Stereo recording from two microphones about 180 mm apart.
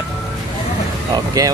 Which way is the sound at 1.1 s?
20° right (ahead or behind).